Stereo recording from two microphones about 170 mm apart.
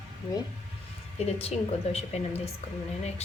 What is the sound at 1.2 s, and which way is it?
Speech, 35° left (ahead or behind).